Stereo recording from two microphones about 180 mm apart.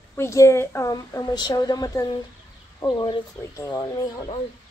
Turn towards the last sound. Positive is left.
turn(degrees=25)  # may be behind; listen again after turning